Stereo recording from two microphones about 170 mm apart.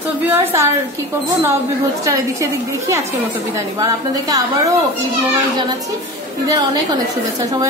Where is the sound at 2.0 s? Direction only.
20° right (ahead or behind).